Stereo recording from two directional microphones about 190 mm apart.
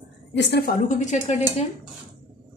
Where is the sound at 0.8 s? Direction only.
40° left (ahead or behind).